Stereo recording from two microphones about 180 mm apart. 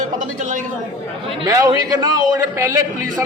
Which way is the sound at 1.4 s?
20° right (ahead or behind).